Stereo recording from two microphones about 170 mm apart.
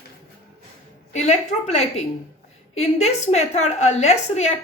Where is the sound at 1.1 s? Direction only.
40° left (ahead or behind).